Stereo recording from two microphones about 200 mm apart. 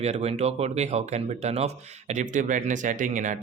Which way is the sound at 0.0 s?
30° right (ahead or behind).